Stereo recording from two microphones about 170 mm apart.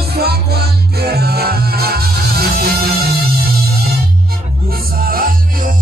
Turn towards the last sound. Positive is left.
turn(degrees=-55)  # may be behind; listen again after turning